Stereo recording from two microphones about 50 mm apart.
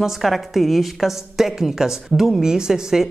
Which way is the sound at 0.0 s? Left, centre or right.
Centre.